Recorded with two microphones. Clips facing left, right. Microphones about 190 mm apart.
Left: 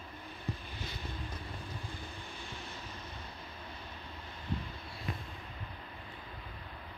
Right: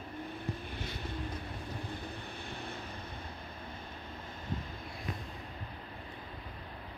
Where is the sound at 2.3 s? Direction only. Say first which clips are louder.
Right 4 dB; 60° right (ahead or behind).